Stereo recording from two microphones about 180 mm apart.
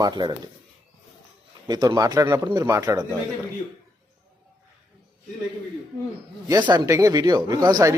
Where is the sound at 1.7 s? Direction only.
20° right (ahead or behind).